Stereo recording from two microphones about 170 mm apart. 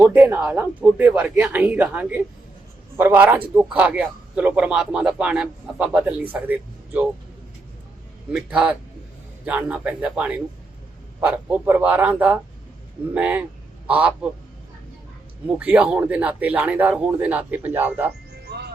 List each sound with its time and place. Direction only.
0.0 s speech: 10° right (ahead or behind)
8.3 s a man's voice: 5° right (ahead or behind)
15.4 s speech: 10° right (ahead or behind)
18.4 s music: 75° right (ahead or behind)